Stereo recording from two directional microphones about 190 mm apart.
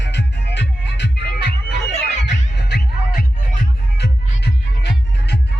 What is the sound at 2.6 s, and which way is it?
Music, 60° left (ahead or behind).